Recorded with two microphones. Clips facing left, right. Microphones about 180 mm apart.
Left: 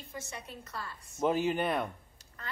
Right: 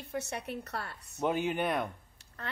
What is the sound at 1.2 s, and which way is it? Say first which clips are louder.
Speech: left 1 dB; centre (ahead or behind).